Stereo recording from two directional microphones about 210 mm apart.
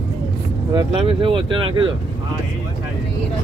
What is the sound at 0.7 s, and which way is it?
Speech, 25° right (ahead or behind).